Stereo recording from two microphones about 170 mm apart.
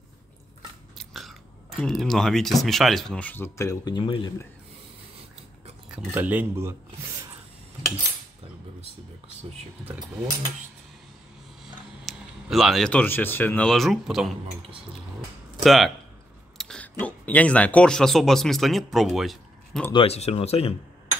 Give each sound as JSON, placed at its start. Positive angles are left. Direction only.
{"t": 0.9, "sound": "biting", "side_deg": 0}
{"t": 1.8, "sound": "speech", "side_deg": 0}
{"t": 5.9, "sound": "speech", "side_deg": -5}
{"t": 11.6, "sound": "speech", "side_deg": 0}
{"t": 15.6, "sound": "speech", "side_deg": 0}
{"t": 19.9, "sound": "speech", "side_deg": 35}